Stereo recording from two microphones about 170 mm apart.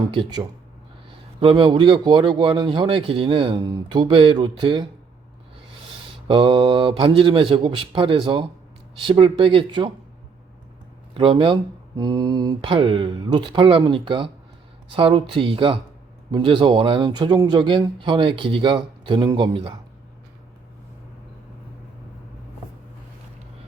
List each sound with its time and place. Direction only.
0.1 s speech: 25° right (ahead or behind)
6.2 s speech: 30° right (ahead or behind)
11.1 s speech: 30° right (ahead or behind)